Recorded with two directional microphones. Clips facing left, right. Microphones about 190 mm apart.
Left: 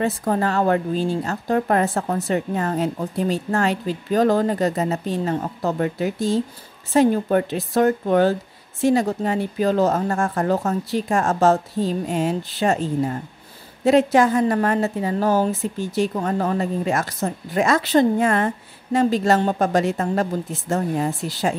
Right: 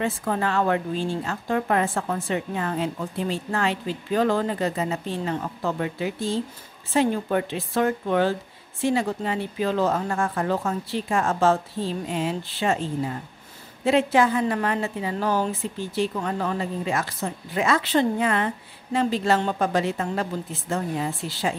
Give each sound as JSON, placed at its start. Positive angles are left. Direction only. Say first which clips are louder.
{"t": 0.0, "sound": "a woman's voice", "louder": "left 4 dB", "side_deg": 40}